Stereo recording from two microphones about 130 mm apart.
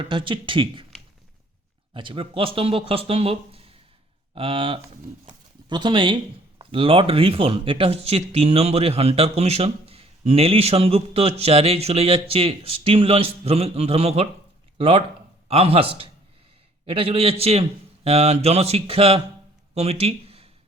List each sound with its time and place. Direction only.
0.0 s speech: 40° right (ahead or behind)
1.9 s a man's voice: 40° right (ahead or behind)
19.7 s a sound: 55° right (ahead or behind)